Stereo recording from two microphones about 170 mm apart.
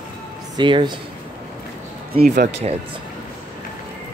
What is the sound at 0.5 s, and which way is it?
Speech, 25° right (ahead or behind).